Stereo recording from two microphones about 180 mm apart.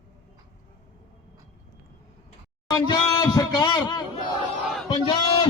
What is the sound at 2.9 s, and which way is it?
A man's voice, 20° left (ahead or behind).